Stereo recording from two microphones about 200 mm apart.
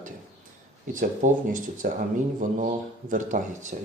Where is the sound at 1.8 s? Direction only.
40° right (ahead or behind).